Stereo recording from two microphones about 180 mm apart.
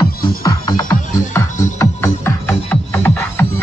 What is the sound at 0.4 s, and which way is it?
Music, 25° left (ahead or behind).